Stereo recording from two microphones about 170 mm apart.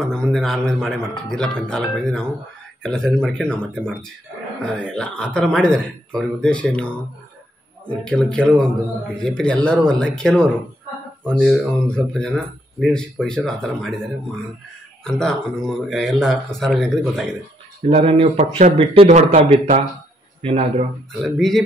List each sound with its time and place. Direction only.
0.0 s speech: centre (ahead or behind)
15.0 s speech: 5° left (ahead or behind)
17.8 s speech: 35° right (ahead or behind)
21.2 s speech: centre (ahead or behind)